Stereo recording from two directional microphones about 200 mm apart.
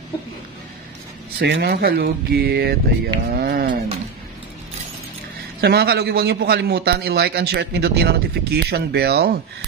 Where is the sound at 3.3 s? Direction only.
50° right (ahead or behind).